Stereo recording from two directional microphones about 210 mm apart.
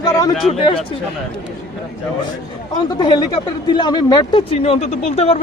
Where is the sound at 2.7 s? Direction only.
20° left (ahead or behind).